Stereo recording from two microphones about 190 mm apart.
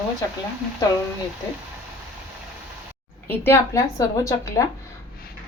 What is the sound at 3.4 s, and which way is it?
A woman's voice, 15° left (ahead or behind).